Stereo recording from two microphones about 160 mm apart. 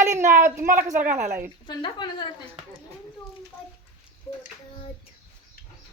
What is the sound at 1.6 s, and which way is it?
Speech, 25° left (ahead or behind).